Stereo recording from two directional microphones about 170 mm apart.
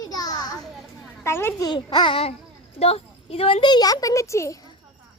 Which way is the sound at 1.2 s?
15° left (ahead or behind).